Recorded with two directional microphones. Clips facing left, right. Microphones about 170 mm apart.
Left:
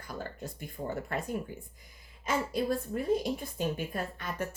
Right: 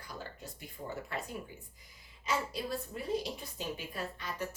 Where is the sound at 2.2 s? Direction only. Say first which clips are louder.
Left 5 dB; 50° left (ahead or behind).